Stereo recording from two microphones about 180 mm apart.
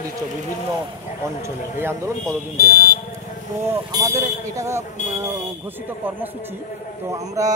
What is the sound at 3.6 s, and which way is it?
Speech, 15° right (ahead or behind).